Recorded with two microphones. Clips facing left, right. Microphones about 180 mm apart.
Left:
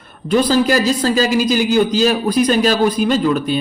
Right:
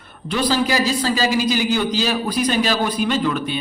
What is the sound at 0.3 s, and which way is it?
A man's voice, 45° left (ahead or behind).